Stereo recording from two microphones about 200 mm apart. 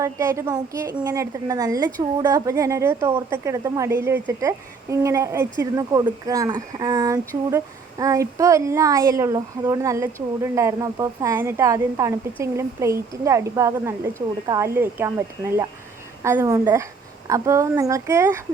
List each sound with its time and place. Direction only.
0.0 s speech: 15° right (ahead or behind)